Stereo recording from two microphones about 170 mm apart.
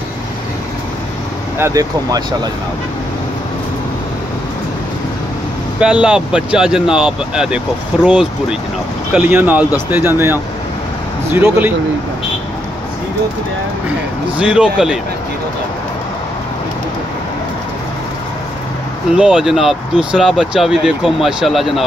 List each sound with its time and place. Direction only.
1.6 s speech: 20° right (ahead or behind)
5.8 s speech: 5° right (ahead or behind)
14.4 s speech: 5° right (ahead or behind)
19.1 s speech: 5° right (ahead or behind)